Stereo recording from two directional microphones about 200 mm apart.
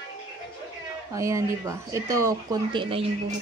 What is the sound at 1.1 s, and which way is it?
Speech, 15° right (ahead or behind).